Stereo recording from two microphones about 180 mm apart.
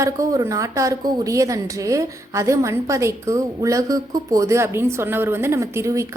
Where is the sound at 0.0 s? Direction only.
15° right (ahead or behind).